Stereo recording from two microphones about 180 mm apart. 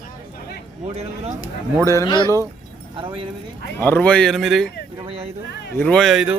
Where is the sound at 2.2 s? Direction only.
15° right (ahead or behind).